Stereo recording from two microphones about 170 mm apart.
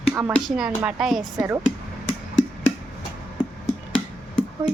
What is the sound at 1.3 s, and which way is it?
Speech, 15° right (ahead or behind).